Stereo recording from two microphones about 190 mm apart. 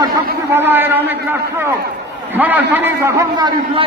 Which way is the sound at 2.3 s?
10° right (ahead or behind).